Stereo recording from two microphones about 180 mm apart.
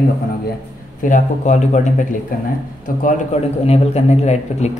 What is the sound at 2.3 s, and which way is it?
Speech, 50° left (ahead or behind).